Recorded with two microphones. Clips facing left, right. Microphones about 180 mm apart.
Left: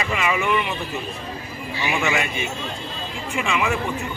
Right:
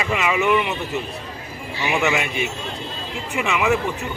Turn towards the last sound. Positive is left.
turn(degrees=-20)  # may be behind; listen again after turning